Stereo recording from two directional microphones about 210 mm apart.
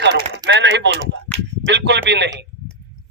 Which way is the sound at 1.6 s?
55° right (ahead or behind).